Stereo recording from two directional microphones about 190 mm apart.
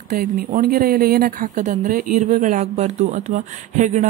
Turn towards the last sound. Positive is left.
turn(degrees=-40)  # may be behind; listen again after turning